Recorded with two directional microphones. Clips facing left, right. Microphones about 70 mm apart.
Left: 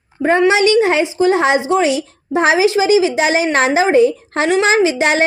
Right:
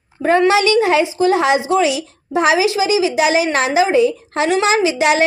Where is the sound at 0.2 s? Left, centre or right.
Left.